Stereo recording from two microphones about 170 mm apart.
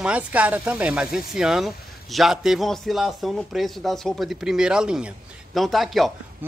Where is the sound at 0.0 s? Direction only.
10° right (ahead or behind).